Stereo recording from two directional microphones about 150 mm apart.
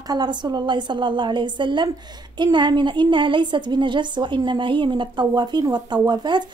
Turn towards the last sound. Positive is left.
turn(degrees=-30)  # may be behind; listen again after turning